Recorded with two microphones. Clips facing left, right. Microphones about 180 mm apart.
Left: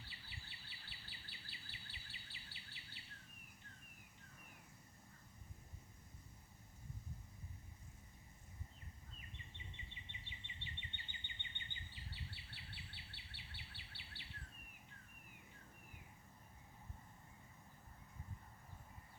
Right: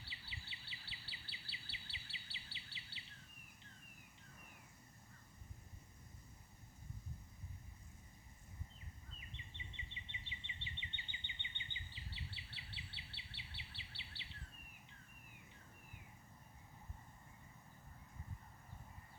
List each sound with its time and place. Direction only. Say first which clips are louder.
0.1 s insect: right 2 dB; 50° left (ahead or behind)
9.7 s insect: right 2 dB; 50° left (ahead or behind)